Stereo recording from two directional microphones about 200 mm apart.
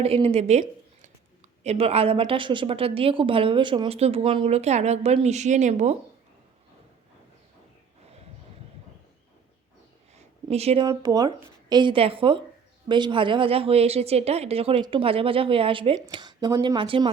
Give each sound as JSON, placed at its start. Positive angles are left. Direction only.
{"t": 0.0, "sound": "a woman's voice", "side_deg": -30}
{"t": 10.2, "sound": "a sound", "side_deg": -30}
{"t": 10.8, "sound": "a woman's voice", "side_deg": -20}